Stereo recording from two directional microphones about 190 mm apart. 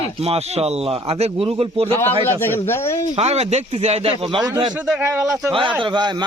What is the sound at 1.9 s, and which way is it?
Speech, 10° left (ahead or behind).